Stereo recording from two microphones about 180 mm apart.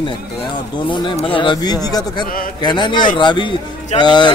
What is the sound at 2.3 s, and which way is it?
Speech, 50° left (ahead or behind).